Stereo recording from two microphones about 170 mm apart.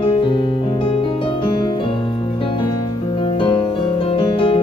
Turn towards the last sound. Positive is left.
turn(degrees=30)  # may be behind; listen again after turning